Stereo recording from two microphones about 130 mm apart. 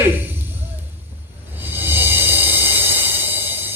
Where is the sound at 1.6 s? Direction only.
15° right (ahead or behind).